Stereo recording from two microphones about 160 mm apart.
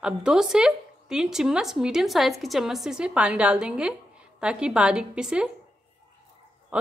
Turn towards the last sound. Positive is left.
turn(degrees=-10)  # may be behind; listen again after turning